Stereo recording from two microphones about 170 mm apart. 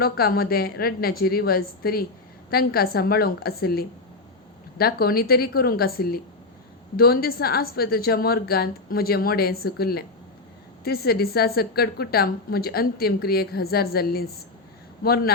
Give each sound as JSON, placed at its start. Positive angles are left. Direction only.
{"t": 0.0, "sound": "a woman's voice", "side_deg": 65}